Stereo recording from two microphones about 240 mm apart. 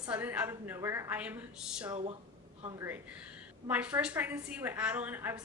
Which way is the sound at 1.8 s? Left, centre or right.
Right.